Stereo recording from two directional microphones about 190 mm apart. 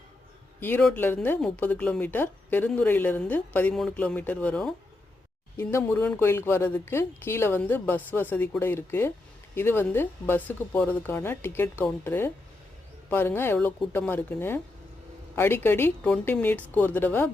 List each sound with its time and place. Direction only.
0.6 s speech: 10° left (ahead or behind)